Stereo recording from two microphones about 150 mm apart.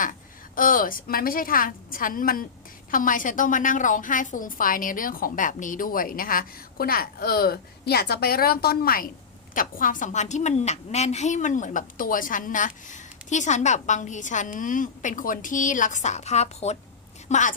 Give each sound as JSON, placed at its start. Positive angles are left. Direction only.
{"t": 0.0, "sound": "a woman's voice", "side_deg": 65}
{"t": 9.6, "sound": "a woman's voice", "side_deg": 65}